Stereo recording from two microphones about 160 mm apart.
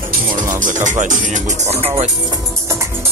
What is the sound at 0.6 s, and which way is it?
Speech, 50° right (ahead or behind).